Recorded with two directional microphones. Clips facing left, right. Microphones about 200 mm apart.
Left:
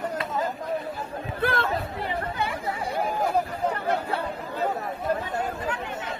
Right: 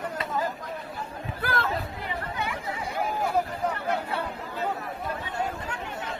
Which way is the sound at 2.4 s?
35° left (ahead or behind).